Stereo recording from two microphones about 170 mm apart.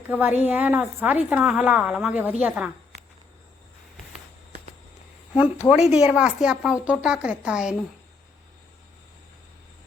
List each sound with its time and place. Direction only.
0.1 s a woman's voice: 10° right (ahead or behind)
5.3 s a woman's voice: 5° right (ahead or behind)